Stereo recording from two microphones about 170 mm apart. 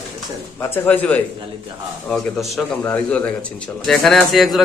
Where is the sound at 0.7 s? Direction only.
10° left (ahead or behind).